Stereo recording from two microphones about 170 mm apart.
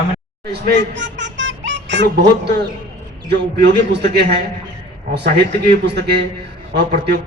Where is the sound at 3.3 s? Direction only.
85° right.